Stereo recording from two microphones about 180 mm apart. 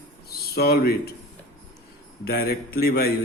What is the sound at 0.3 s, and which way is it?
Speech, 60° left (ahead or behind).